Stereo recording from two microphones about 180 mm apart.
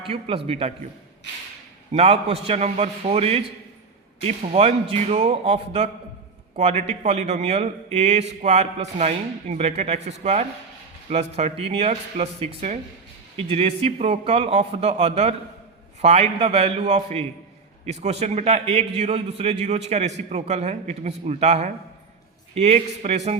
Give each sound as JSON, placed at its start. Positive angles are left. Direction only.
{"t": 0.0, "sound": "a man's voice", "side_deg": -30}
{"t": 1.9, "sound": "a man's voice", "side_deg": -35}